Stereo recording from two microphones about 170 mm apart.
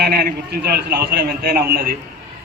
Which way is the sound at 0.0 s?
65° right (ahead or behind).